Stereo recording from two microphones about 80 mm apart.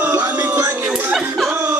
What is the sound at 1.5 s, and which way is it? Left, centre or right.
Music, right.